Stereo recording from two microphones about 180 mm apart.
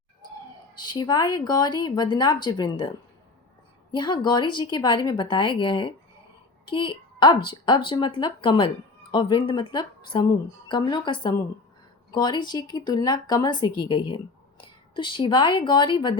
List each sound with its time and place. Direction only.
0.8 s speech: 25° left (ahead or behind)
3.9 s a woman's voice: 25° left (ahead or behind)